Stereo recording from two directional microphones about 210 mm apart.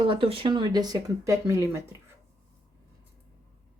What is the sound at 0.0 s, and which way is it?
Speech, 25° right (ahead or behind).